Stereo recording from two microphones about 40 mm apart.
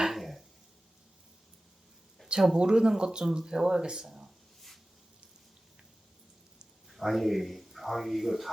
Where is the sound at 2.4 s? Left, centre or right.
Centre.